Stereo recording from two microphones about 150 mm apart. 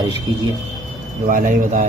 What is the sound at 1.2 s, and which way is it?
Speech, 65° right (ahead or behind).